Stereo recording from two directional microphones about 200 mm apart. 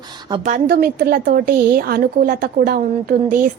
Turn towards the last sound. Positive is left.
turn(degrees=-50)  # may be behind; listen again after turning